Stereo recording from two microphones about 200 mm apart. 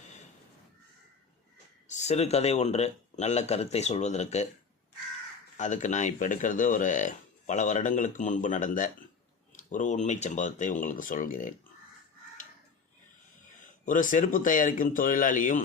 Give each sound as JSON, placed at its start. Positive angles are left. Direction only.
{"t": 1.9, "sound": "speech", "side_deg": 35}
{"t": 5.5, "sound": "speech", "side_deg": 40}
{"t": 13.8, "sound": "speech", "side_deg": 40}